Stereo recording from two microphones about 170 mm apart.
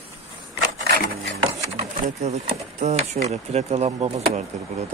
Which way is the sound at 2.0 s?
45° right (ahead or behind).